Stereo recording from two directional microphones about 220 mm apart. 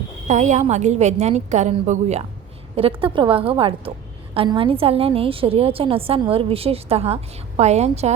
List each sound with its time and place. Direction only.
0.3 s a woman's voice: 35° right (ahead or behind)